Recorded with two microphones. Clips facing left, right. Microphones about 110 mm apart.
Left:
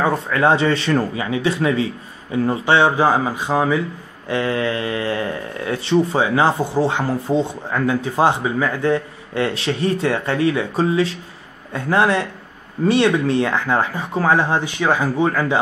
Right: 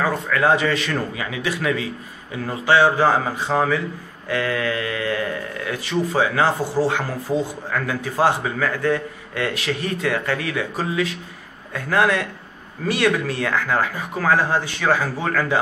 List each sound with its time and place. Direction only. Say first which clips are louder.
0.0 s speech: left 2 dB; 25° left (ahead or behind)
4.3 s speech: left 2 dB; 25° left (ahead or behind)